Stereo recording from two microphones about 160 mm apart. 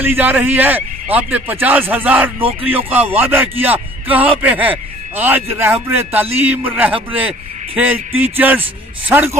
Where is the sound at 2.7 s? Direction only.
10° right (ahead or behind).